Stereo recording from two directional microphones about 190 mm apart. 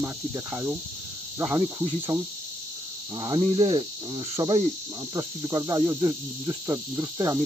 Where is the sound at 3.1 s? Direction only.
25° right (ahead or behind).